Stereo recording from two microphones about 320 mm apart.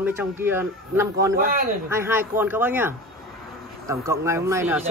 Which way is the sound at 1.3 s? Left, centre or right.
Right.